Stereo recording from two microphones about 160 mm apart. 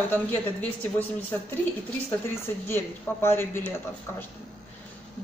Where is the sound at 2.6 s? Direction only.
15° left (ahead or behind).